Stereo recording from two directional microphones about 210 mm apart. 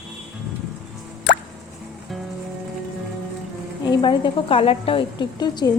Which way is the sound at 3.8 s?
20° left (ahead or behind).